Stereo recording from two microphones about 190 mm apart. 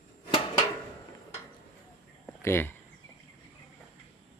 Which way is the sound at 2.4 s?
10° left (ahead or behind).